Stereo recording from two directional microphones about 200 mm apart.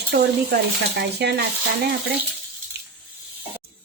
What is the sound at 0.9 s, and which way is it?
Speech, 55° right (ahead or behind).